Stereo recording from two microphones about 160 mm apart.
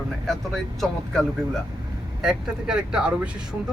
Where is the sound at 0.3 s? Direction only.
Centre (ahead or behind).